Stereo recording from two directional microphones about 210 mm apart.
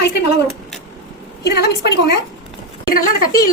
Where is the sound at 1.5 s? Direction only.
50° left (ahead or behind).